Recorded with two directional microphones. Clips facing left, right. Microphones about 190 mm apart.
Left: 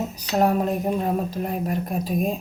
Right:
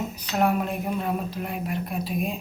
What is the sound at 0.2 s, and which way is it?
Speech, 40° left (ahead or behind).